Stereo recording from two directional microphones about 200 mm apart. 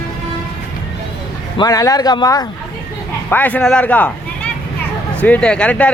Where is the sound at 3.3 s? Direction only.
10° left (ahead or behind).